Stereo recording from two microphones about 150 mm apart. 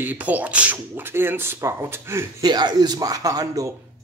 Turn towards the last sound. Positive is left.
turn(degrees=-25)  # may be behind; listen again after turning